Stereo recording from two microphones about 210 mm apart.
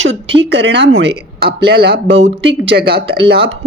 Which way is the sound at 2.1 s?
30° right (ahead or behind).